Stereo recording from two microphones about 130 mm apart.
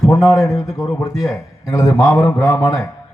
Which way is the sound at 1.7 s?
25° left (ahead or behind).